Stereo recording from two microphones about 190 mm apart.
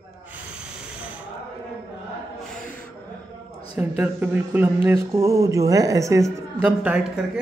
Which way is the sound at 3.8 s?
10° right (ahead or behind).